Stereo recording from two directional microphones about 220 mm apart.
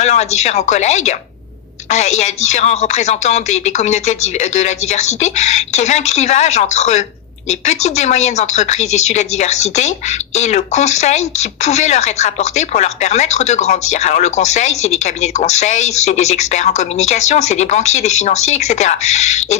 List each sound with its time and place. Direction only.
0.0 s speech: 30° left (ahead or behind)